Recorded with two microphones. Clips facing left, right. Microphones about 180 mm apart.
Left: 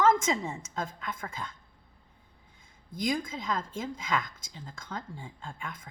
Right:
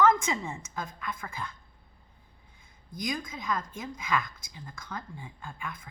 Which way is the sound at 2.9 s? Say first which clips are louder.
Left 4 dB; 25° left (ahead or behind).